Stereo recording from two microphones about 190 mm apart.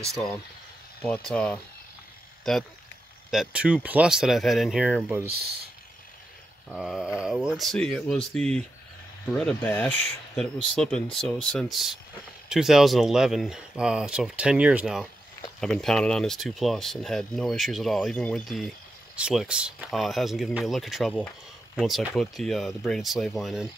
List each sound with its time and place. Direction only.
1.0 s speech: 5° left (ahead or behind); by 5.3 s 10° right (ahead or behind)
5.3 s speech: 55° right (ahead or behind)
6.7 s speech: 5° right (ahead or behind)